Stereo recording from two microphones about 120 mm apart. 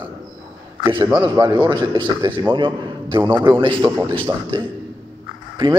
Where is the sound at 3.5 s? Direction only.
45° right (ahead or behind).